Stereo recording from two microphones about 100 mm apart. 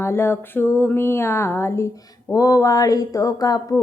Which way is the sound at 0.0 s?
25° left (ahead or behind).